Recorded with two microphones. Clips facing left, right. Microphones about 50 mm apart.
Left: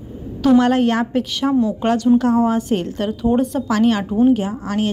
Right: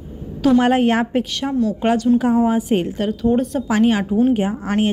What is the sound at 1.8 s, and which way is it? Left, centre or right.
A woman's voice, centre.